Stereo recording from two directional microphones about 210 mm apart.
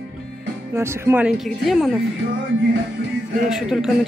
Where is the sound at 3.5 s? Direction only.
Centre (ahead or behind).